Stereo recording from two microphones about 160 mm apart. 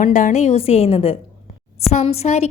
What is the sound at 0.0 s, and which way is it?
Speech, 50° left (ahead or behind).